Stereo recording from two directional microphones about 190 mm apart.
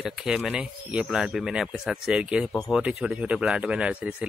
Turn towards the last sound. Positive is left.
turn(degrees=-5)  # may be behind; listen again after turning